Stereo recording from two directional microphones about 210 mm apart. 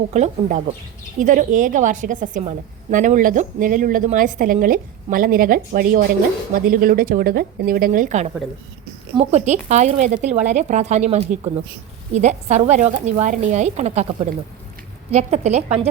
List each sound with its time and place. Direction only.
0.1 s a woman's voice: 35° right (ahead or behind)